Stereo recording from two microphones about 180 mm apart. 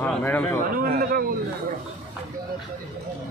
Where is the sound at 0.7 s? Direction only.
55° right (ahead or behind).